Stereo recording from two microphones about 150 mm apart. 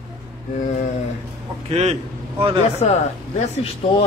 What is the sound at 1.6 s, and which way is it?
Speech, 45° right (ahead or behind).